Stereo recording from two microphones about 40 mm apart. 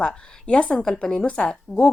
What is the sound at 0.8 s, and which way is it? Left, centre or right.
Speech, centre.